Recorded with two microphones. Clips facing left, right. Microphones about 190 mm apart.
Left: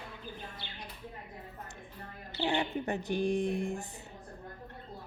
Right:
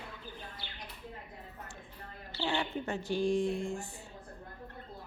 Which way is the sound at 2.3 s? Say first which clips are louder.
Left 2 dB; 15° left (ahead or behind).